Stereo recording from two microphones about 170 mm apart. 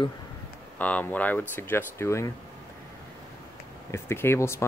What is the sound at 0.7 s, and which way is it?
Speech, 10° left (ahead or behind).